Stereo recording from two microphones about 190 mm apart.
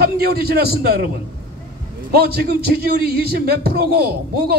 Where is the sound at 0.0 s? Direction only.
55° right (ahead or behind).